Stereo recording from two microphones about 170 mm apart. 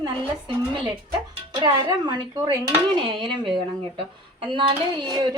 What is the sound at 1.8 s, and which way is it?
A woman's voice, 25° right (ahead or behind).